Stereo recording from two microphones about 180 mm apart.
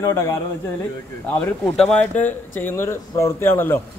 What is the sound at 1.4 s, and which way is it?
Speech, 5° left (ahead or behind).